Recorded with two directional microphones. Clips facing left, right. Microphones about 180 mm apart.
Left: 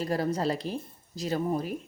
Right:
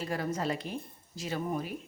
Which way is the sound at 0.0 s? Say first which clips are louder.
Left 5 dB; 35° left (ahead or behind).